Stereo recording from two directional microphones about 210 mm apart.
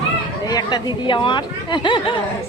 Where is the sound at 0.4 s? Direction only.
20° left (ahead or behind).